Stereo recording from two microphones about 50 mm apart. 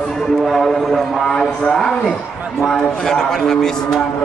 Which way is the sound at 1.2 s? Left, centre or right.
Centre.